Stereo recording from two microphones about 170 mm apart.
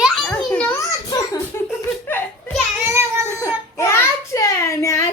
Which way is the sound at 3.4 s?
15° left (ahead or behind).